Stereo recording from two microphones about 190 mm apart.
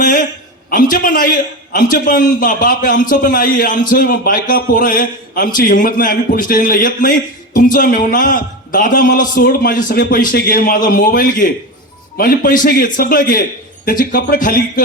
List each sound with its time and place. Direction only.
0.7 s a man's voice: 45° left (ahead or behind)